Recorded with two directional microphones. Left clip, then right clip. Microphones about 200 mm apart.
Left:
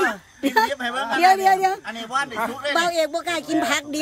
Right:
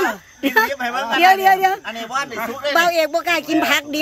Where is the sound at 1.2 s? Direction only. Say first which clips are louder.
Right 3 dB; centre (ahead or behind).